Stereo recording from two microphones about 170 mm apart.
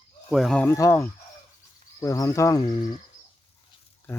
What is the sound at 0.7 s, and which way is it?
Speech, 15° left (ahead or behind).